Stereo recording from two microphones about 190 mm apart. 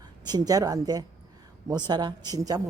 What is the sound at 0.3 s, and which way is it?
A woman's voice, 20° right (ahead or behind).